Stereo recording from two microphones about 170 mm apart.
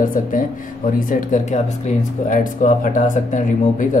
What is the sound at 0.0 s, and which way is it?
Speech, 50° left (ahead or behind).